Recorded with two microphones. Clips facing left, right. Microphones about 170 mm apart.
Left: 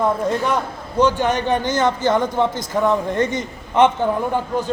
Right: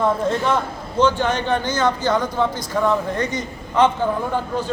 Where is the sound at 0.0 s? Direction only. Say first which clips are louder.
Even; 15° left (ahead or behind).